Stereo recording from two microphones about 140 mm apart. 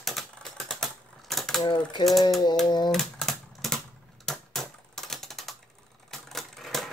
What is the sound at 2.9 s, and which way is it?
Typewriter, 5° left (ahead or behind).